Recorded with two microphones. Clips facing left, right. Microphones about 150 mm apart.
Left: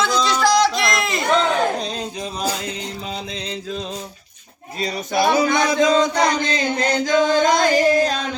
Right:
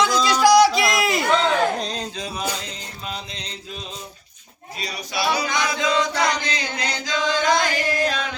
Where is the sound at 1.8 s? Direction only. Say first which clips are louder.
Left 2 dB; 5° left (ahead or behind).